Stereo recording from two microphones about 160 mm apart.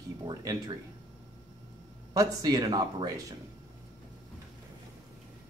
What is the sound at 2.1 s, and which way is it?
Speech, 25° right (ahead or behind).